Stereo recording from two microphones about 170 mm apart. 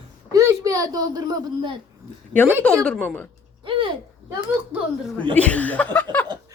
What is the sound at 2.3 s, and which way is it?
Speech, 10° left (ahead or behind).